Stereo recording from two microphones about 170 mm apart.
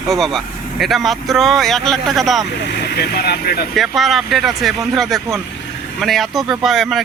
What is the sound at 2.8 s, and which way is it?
Speech, 70° left (ahead or behind).